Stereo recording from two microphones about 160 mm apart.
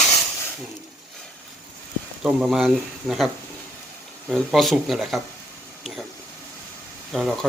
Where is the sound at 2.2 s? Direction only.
Centre (ahead or behind).